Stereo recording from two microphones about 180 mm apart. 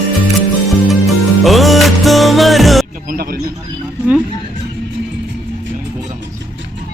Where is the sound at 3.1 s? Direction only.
55° right (ahead or behind).